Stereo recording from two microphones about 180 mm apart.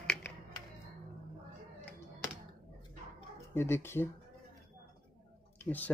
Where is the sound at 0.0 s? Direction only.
5° left (ahead or behind).